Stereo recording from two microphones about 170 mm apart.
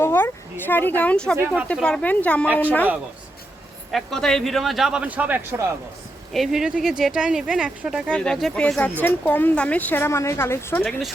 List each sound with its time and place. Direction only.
0.0 s speech: 15° left (ahead or behind)
2.5 s a woman's voice: 10° right (ahead or behind)
3.9 s speech: 5° left (ahead or behind)
8.1 s speech: 5° left (ahead or behind)